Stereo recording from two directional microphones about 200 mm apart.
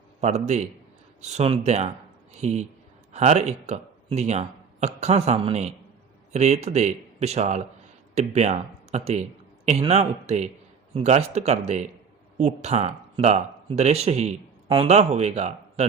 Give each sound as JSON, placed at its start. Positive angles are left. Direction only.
{"t": 0.2, "sound": "speech", "side_deg": -35}